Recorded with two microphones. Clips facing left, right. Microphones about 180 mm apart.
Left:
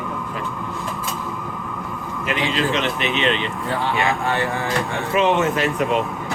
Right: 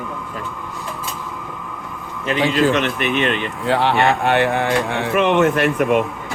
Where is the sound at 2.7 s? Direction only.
55° right (ahead or behind).